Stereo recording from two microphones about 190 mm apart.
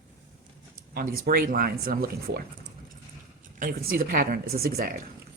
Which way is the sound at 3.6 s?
50° right (ahead or behind).